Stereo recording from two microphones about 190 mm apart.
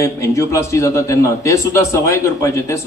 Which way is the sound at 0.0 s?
15° left (ahead or behind).